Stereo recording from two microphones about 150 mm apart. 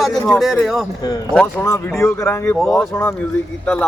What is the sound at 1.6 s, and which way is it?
Speech, 15° left (ahead or behind).